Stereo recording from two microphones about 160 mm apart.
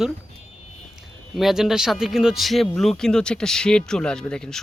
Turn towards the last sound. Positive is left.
turn(degrees=5)  # may be behind; listen again after turning